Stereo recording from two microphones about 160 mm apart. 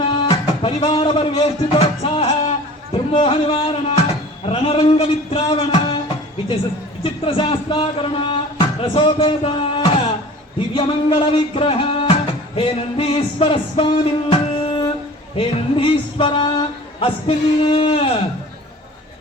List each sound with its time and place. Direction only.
0.1 s speech: 30° left (ahead or behind)
7.0 s speech: 35° left (ahead or behind)
10.8 s music: 35° left (ahead or behind)
15.4 s speech: 35° left (ahead or behind)